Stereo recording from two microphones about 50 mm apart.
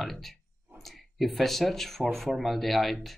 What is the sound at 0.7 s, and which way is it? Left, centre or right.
Speech, centre.